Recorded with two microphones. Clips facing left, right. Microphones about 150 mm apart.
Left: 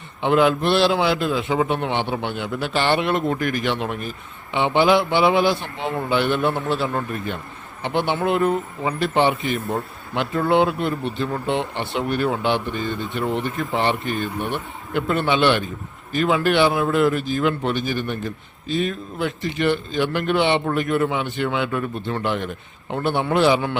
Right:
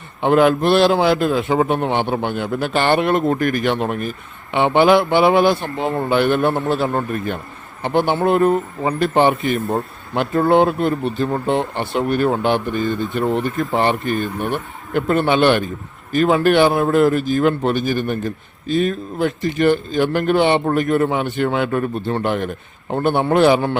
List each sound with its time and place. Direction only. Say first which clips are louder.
0.2 s speech: right 4 dB; 50° right (ahead or behind)